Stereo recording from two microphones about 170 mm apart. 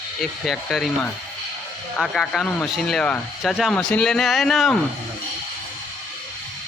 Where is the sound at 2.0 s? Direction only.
Centre (ahead or behind).